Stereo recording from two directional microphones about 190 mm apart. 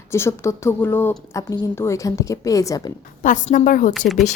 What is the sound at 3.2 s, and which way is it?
Speech, 40° left (ahead or behind).